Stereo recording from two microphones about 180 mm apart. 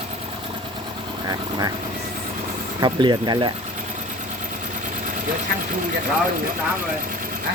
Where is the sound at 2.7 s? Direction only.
25° right (ahead or behind).